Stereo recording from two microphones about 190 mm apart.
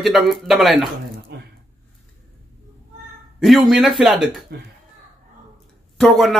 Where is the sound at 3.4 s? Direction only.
Centre (ahead or behind).